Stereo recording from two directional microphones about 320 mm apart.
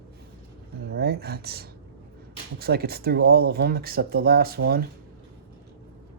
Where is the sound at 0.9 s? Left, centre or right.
Right.